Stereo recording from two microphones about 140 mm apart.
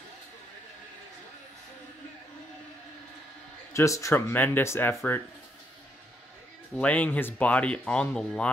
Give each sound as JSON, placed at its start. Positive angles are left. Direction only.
{"t": 3.7, "sound": "speech", "side_deg": 20}
{"t": 6.7, "sound": "speech", "side_deg": 10}